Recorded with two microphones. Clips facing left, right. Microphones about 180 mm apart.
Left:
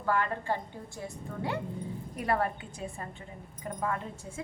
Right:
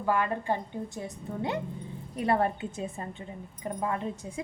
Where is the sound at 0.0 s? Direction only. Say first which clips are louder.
Right 2 dB; 15° right (ahead or behind).